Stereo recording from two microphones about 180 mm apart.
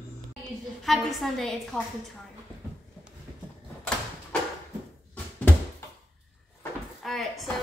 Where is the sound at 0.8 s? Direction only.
Centre (ahead or behind).